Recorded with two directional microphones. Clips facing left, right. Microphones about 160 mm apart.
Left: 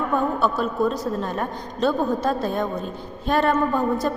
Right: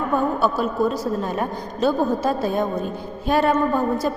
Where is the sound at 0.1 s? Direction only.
5° right (ahead or behind).